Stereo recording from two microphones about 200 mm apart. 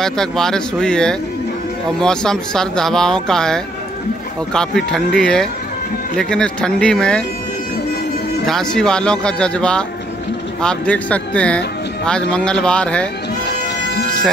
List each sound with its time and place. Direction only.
0.0 s speech: centre (ahead or behind)
8.5 s speech: 5° left (ahead or behind)
13.5 s music: 55° left (ahead or behind)